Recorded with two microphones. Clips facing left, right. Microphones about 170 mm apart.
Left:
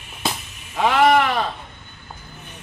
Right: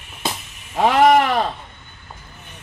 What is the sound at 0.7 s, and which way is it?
Speech, 40° right (ahead or behind).